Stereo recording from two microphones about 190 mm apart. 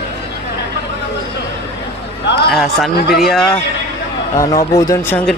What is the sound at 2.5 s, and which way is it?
Speech, centre (ahead or behind).